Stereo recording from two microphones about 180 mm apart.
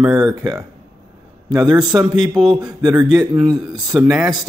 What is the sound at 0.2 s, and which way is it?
Speech, 20° right (ahead or behind).